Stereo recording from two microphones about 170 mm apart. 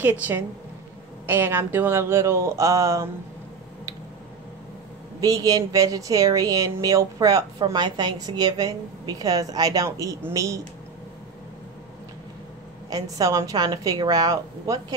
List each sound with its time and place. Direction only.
1.2 s speech: 10° right (ahead or behind)
5.2 s speech: 20° right (ahead or behind)
12.9 s speech: 20° right (ahead or behind)